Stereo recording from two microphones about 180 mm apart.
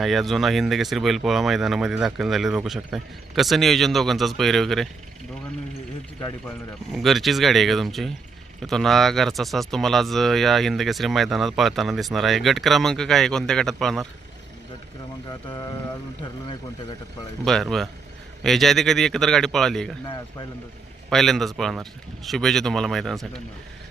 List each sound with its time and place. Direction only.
0.0 s speech: centre (ahead or behind)
6.9 s speech: centre (ahead or behind)
15.3 s speech: 20° left (ahead or behind)
17.4 s speech: centre (ahead or behind)
21.1 s speech: centre (ahead or behind)